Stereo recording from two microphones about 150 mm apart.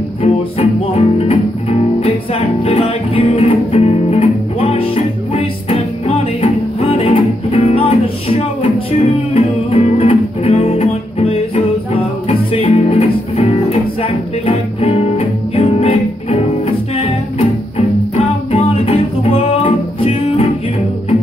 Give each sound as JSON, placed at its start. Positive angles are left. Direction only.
{"t": 0.2, "sound": "music", "side_deg": 40}